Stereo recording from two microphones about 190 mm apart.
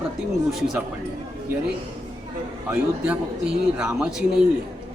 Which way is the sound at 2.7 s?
5° right (ahead or behind).